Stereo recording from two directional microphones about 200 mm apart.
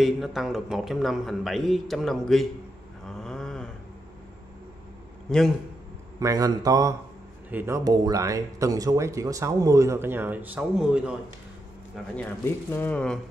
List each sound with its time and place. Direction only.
0.0 s a man's voice: centre (ahead or behind)
3.2 s a sound: centre (ahead or behind)
5.3 s a man's voice: 5° left (ahead or behind)
6.1 s speech: 15° right (ahead or behind)
12.2 s speech: 10° left (ahead or behind)